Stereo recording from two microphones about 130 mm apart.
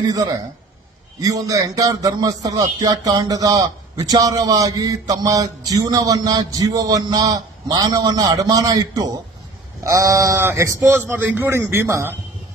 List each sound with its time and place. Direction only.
0.0 s a man's voice: 30° right (ahead or behind)